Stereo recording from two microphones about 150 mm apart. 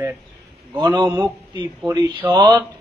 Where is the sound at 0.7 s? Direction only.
25° right (ahead or behind).